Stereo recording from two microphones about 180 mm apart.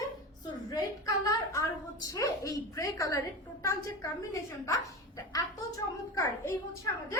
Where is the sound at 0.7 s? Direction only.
20° left (ahead or behind).